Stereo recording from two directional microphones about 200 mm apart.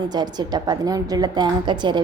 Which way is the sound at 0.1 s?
20° right (ahead or behind).